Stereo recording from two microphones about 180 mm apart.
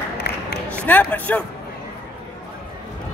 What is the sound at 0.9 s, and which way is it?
Speech, 10° left (ahead or behind).